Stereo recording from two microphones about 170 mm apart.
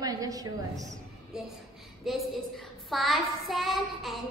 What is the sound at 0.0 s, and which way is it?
Speech, 20° right (ahead or behind).